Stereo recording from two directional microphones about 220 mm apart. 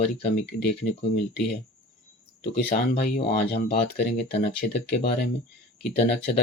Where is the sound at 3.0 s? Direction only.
45° left (ahead or behind).